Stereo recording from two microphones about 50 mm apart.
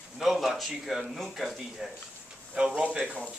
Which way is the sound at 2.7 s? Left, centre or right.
Right.